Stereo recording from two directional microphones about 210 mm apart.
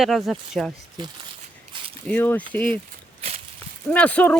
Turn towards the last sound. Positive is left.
turn(degrees=5)  # may be behind; listen again after turning